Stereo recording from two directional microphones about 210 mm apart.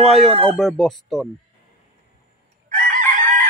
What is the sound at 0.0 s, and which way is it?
Speech, centre (ahead or behind).